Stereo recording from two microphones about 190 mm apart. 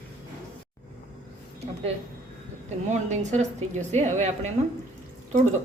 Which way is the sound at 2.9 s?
40° right (ahead or behind).